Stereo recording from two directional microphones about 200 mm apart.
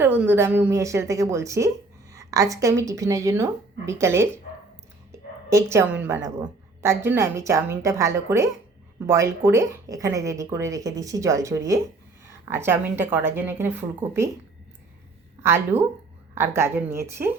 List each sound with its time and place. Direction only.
0.0 s a woman's voice: 10° right (ahead or behind)
5.1 s a sound: 15° right (ahead or behind)
5.5 s a woman's voice: 15° right (ahead or behind)
15.4 s a woman's voice: 10° right (ahead or behind)